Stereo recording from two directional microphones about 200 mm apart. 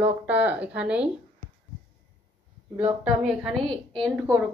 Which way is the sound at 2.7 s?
10° right (ahead or behind).